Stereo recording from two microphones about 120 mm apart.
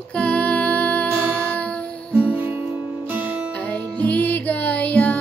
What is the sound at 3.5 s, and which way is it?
Music, 10° left (ahead or behind).